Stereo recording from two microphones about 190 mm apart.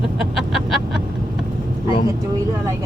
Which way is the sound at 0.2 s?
Centre (ahead or behind).